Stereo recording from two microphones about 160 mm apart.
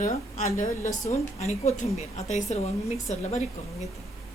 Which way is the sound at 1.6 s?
45° left (ahead or behind).